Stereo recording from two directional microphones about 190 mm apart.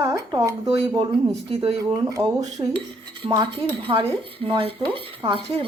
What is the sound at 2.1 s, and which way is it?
Speech, 20° right (ahead or behind).